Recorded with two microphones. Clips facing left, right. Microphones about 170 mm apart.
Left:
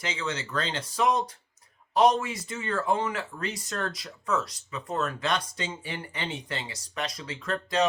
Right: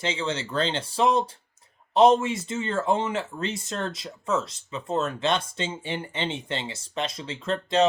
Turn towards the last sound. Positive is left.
turn(degrees=-25)  # may be behind; listen again after turning